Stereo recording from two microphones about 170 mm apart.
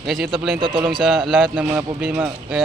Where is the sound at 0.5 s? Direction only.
30° right (ahead or behind).